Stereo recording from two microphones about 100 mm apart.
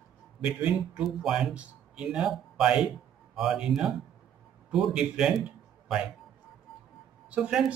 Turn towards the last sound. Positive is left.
turn(degrees=-10)  # may be behind; listen again after turning